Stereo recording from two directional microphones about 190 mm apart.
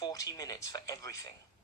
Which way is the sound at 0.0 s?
20° left (ahead or behind).